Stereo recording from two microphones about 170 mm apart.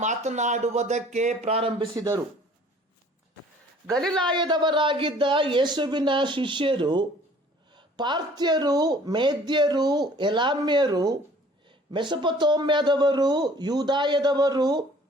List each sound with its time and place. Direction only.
0.0 s speech: 45° right (ahead or behind)
4.3 s speech: 25° right (ahead or behind)